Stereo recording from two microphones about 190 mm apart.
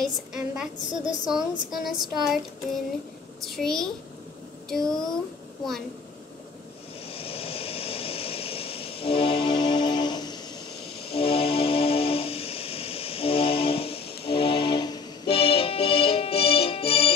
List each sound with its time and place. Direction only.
0.3 s a woman's voice: 5° right (ahead or behind)
3.4 s a woman's voice: centre (ahead or behind)
7.1 s vehicle: 30° left (ahead or behind)
11.1 s music: 30° left (ahead or behind)